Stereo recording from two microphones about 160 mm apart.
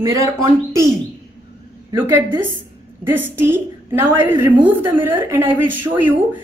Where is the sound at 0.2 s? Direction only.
20° right (ahead or behind).